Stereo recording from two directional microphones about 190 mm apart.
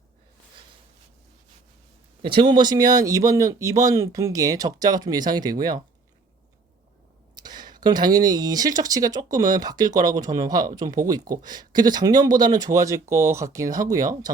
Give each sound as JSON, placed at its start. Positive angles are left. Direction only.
{"t": 2.2, "sound": "speech", "side_deg": -25}
{"t": 7.3, "sound": "speech", "side_deg": -20}